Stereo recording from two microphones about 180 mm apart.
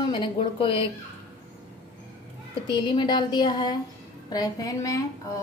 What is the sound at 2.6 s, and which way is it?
A woman's voice, 25° left (ahead or behind).